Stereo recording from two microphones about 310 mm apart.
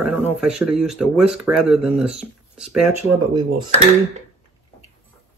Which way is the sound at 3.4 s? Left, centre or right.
Centre.